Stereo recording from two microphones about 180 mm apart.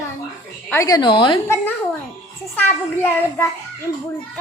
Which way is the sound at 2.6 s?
10° left (ahead or behind).